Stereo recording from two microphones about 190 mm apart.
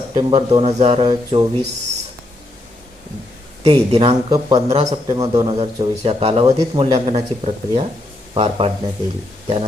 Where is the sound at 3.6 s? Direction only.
30° right (ahead or behind).